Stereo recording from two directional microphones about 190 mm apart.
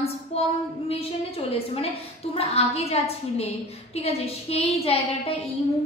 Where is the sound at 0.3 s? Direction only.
30° left (ahead or behind).